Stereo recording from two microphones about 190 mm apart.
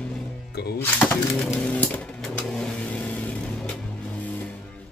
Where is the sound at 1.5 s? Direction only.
5° left (ahead or behind).